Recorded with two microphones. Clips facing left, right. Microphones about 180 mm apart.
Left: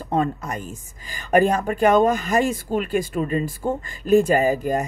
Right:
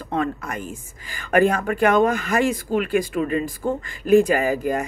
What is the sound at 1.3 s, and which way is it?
Speech, 40° left (ahead or behind).